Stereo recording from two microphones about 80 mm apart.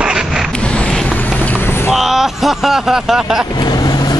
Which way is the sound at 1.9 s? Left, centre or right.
Centre.